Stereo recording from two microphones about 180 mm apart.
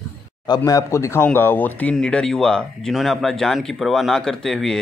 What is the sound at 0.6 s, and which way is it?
Speech, 15° left (ahead or behind).